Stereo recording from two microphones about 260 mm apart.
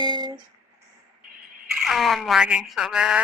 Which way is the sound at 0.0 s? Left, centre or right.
Centre.